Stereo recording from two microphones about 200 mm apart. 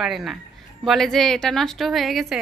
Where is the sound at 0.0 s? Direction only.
Centre (ahead or behind).